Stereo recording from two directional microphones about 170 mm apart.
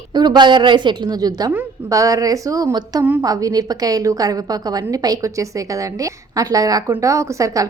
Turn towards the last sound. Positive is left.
turn(degrees=-20)  # may be behind; listen again after turning